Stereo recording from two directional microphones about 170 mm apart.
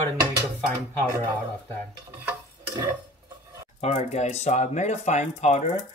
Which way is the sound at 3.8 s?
40° left (ahead or behind).